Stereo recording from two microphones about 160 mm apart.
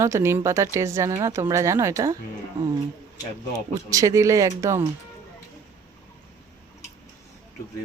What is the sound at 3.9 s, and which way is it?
Speech, 20° right (ahead or behind).